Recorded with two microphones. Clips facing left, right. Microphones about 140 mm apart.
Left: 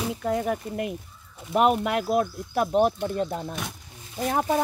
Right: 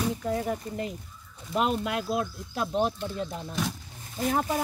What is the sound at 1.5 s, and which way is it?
Speech, 60° left (ahead or behind).